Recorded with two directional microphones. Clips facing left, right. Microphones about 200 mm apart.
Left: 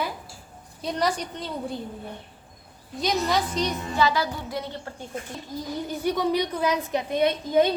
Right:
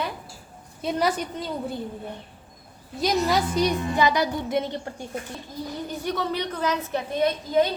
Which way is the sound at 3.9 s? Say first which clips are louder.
Right 2 dB; 15° right (ahead or behind).